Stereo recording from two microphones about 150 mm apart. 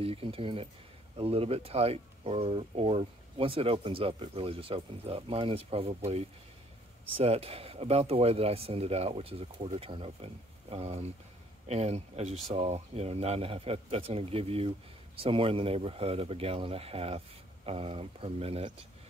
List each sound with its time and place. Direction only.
0.0 s speech: 40° right (ahead or behind)